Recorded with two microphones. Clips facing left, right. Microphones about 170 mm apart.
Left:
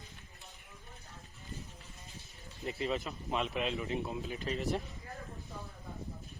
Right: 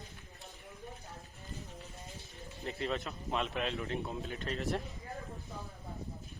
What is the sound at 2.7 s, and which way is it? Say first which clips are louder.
Speech: left 1 dB; 5° left (ahead or behind).